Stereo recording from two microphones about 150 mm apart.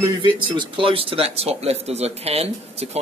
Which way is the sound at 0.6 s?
35° right (ahead or behind).